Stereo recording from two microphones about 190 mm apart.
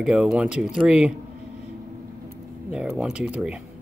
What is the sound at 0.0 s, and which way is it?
Speech, 5° right (ahead or behind).